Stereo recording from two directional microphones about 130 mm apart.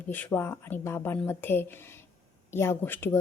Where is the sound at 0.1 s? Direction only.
15° left (ahead or behind).